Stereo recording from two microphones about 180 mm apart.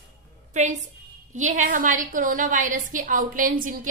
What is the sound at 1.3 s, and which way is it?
A woman's voice, 40° right (ahead or behind).